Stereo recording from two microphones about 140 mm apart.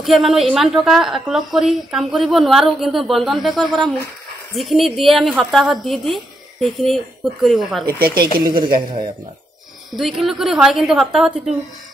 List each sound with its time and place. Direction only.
0.0 s a woman's voice: centre (ahead or behind)
7.8 s speech: 90° right
8.5 s a woman's voice: 35° right (ahead or behind)
9.9 s a woman's voice: centre (ahead or behind)